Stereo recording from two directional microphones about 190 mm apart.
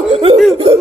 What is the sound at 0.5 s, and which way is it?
Speech, 30° right (ahead or behind).